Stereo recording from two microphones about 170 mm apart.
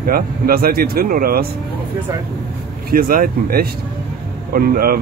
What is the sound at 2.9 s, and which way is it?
Speech, 55° right (ahead or behind).